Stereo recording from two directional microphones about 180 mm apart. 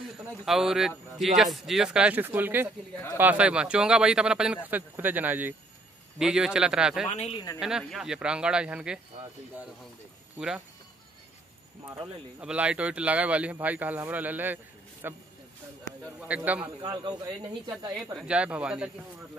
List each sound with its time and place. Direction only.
0.5 s speech: centre (ahead or behind)
7.1 s speech: 35° left (ahead or behind)
7.6 s speech: 5° right (ahead or behind)
12.4 s speech: 5° right (ahead or behind)
16.3 s speech: 10° right (ahead or behind)
16.8 s speech: 20° right (ahead or behind)
18.1 s speech: 5° right (ahead or behind)